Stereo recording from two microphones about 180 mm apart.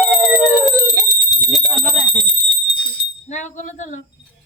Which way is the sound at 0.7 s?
20° left (ahead or behind).